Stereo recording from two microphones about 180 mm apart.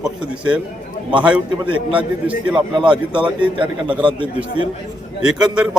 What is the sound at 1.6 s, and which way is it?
Speech, 25° right (ahead or behind).